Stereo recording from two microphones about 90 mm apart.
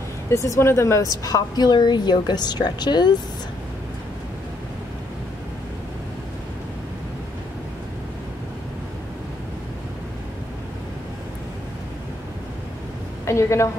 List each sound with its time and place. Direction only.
0.3 s a woman's voice: 35° left (ahead or behind); by 3.2 s 55° left (ahead or behind)
13.3 s a woman's voice: 30° left (ahead or behind)